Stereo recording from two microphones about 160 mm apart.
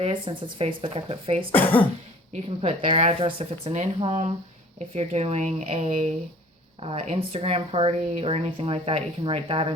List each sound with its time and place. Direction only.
0.0 s speech: 35° right (ahead or behind)